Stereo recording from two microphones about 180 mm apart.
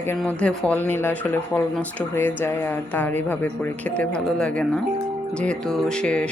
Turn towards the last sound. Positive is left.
turn(degrees=5)  # may be behind; listen again after turning